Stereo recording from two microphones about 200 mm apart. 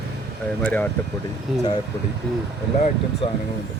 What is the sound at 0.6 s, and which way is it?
Speech, 5° left (ahead or behind).